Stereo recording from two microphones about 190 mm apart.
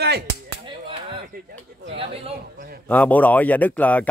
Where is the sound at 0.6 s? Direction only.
25° right (ahead or behind).